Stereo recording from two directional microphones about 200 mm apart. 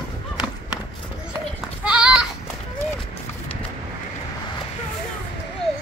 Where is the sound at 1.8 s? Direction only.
5° right (ahead or behind).